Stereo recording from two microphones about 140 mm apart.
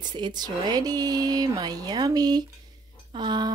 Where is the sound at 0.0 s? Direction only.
30° right (ahead or behind).